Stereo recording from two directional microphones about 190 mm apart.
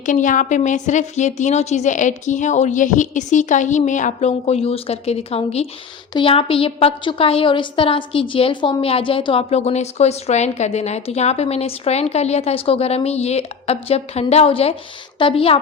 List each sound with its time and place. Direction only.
0.0 s a woman's voice: 40° left (ahead or behind)